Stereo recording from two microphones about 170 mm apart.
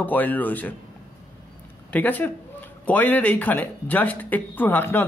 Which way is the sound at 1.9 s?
10° left (ahead or behind).